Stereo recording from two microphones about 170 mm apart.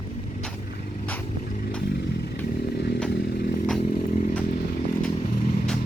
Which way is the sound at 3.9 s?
55° left (ahead or behind).